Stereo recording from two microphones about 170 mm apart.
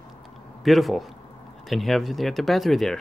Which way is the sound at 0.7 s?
Centre (ahead or behind).